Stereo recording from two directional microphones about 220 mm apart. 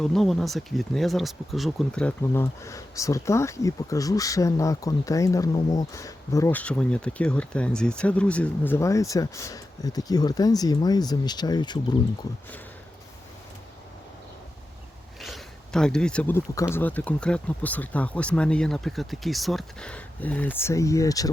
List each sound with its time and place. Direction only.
0.0 s speech: centre (ahead or behind); by 11.9 s 20° left (ahead or behind)
15.2 s speech: centre (ahead or behind)